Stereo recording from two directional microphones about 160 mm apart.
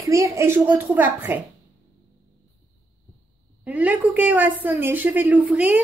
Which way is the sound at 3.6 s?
10° right (ahead or behind).